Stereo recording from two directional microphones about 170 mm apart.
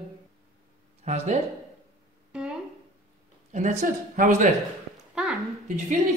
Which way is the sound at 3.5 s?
45° right (ahead or behind).